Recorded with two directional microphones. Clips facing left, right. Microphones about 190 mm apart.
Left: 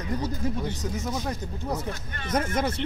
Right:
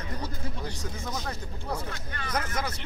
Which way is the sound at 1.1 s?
20° left (ahead or behind).